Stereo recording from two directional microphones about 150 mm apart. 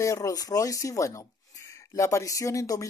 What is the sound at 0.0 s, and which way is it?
Speech, 20° left (ahead or behind).